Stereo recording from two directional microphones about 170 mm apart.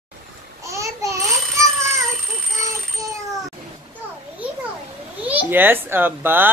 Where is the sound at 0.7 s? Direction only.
20° right (ahead or behind).